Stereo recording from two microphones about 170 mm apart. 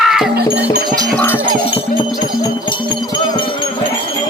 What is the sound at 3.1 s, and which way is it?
Wind chime, 25° left (ahead or behind).